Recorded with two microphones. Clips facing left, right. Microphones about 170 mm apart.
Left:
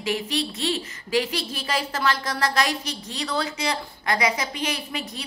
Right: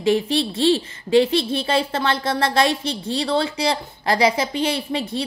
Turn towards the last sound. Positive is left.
turn(degrees=-30)  # may be behind; listen again after turning